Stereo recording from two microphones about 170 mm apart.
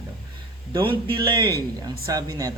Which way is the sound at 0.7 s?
30° right (ahead or behind).